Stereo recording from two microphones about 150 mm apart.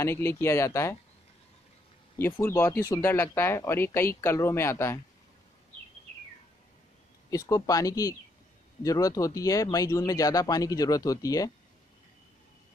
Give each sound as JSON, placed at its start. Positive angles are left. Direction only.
{"t": 0.0, "sound": "speech", "side_deg": 15}
{"t": 2.4, "sound": "speech", "side_deg": 15}
{"t": 7.2, "sound": "speech", "side_deg": 20}